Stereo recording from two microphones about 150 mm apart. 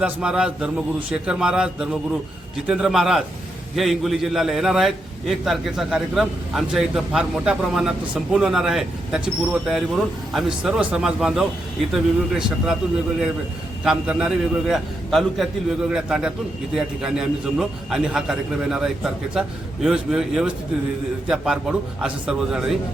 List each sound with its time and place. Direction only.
0.0 s a man's voice: 5° right (ahead or behind)
13.8 s a man's voice: 5° right (ahead or behind)